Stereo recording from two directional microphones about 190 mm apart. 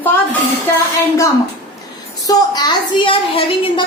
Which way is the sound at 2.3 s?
20° left (ahead or behind).